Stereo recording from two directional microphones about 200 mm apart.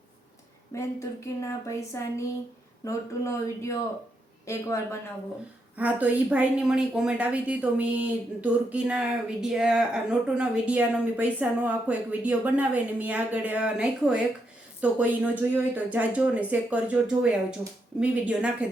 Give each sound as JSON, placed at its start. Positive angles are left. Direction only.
{"t": 0.7, "sound": "a woman's voice", "side_deg": 15}
{"t": 5.7, "sound": "a woman's voice", "side_deg": -5}